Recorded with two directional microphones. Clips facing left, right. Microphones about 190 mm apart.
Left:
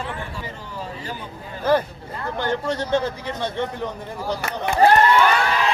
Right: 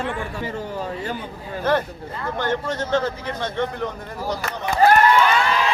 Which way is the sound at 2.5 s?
15° left (ahead or behind).